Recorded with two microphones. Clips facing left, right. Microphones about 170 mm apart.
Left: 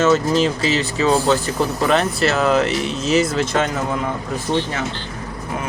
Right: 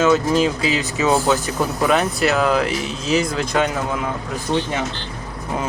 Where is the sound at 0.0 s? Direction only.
5° right (ahead or behind).